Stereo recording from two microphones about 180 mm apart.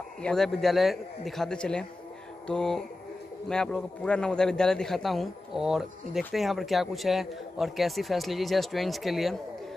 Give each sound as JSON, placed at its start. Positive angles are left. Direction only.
{"t": 0.2, "sound": "a man's voice", "side_deg": 5}